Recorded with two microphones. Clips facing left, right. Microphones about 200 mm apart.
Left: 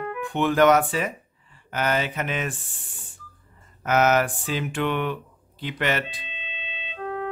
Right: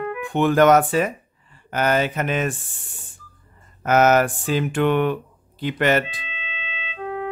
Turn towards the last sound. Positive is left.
turn(degrees=-15)  # may be behind; listen again after turning